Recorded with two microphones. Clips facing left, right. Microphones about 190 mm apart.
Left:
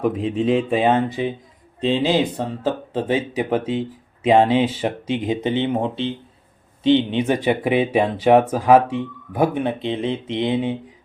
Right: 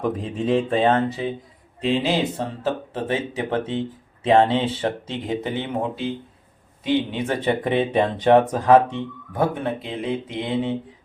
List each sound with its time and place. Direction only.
0.0 s speech: centre (ahead or behind)
2.9 s speech: 15° left (ahead or behind)